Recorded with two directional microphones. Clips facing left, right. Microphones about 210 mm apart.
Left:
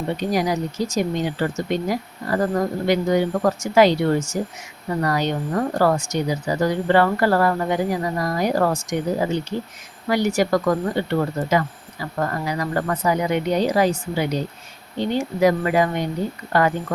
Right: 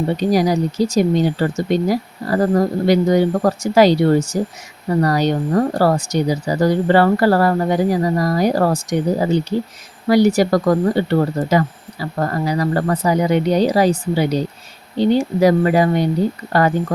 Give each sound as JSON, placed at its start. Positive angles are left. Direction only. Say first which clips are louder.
{"t": 0.2, "sound": "speech", "louder": "right 6 dB", "side_deg": -35}